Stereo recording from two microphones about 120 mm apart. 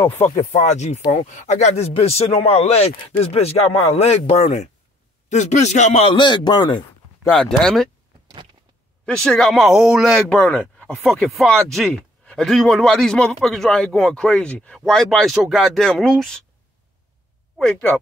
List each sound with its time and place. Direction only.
0.0 s speech: 20° left (ahead or behind)
0.4 s speech: 80° left; by 4.6 s 60° left (ahead or behind)
5.3 s a man's voice: 80° left
6.0 s a man's voice: 40° left (ahead or behind)
7.2 s speech: 5° left (ahead or behind)
9.0 s speech: 5° left (ahead or behind)
17.6 s speech: 10° left (ahead or behind)